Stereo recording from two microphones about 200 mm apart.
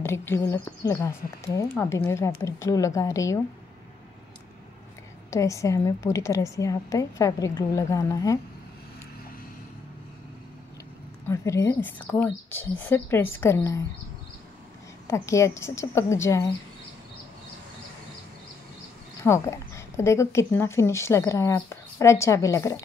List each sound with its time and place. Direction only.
0.0 s a woman's voice: 10° left (ahead or behind)
5.3 s a woman's voice: 15° left (ahead or behind)
11.2 s a woman's voice: 15° left (ahead or behind)
15.0 s a woman's voice: 15° left (ahead or behind)
19.2 s a woman's voice: 15° left (ahead or behind)